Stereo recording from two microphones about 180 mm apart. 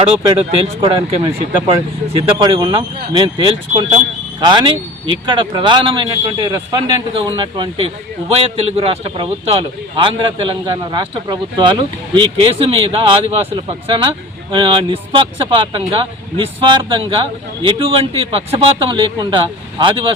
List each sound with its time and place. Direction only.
0.0 s speech: 30° right (ahead or behind)